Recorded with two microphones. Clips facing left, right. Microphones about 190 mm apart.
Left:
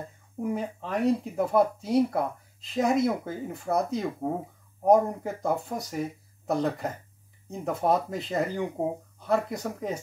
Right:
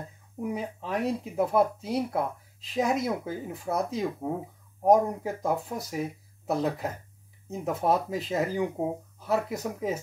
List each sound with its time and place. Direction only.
0.4 s speech: centre (ahead or behind)